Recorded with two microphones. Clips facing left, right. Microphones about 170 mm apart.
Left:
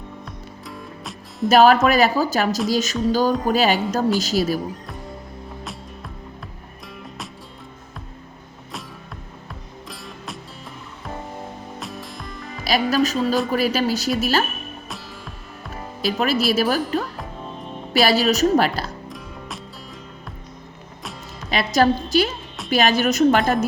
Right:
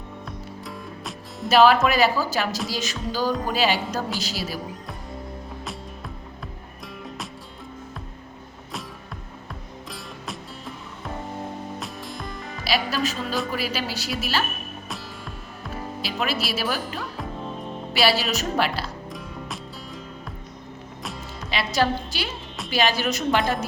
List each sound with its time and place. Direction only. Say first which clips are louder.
0.3 s music: right 1 dB; centre (ahead or behind)
1.5 s a woman's voice: left 3 dB; 45° left (ahead or behind)
11.8 s music: even; centre (ahead or behind)
12.6 s a woman's voice: left 6 dB; 45° left (ahead or behind)
16.0 s a woman's voice: left 7 dB; 45° left (ahead or behind)
17.9 s a woman's voice: left 5 dB; 45° left (ahead or behind)
21.0 s music: even; centre (ahead or behind)
21.5 s music: left 5 dB; 45° left (ahead or behind)
22.7 s a woman's voice: left 5 dB; 50° left (ahead or behind)